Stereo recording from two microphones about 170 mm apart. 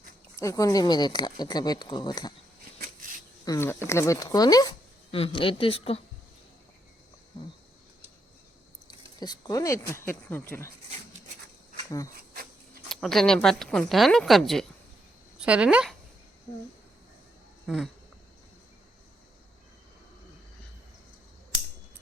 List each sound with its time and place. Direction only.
0.3 s speech: 20° left (ahead or behind)
3.4 s speech: 20° left (ahead or behind)
5.1 s speech: 30° left (ahead or behind)
8.9 s speech: 25° left (ahead or behind)
12.9 s speech: centre (ahead or behind)